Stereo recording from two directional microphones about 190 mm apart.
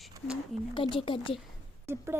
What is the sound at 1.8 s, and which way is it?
Speech, 10° right (ahead or behind).